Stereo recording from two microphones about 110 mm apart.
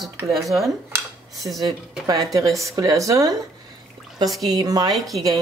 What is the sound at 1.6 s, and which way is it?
Speech, 35° right (ahead or behind).